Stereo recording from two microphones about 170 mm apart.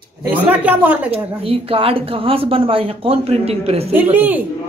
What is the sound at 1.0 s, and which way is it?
A woman's voice, 35° right (ahead or behind).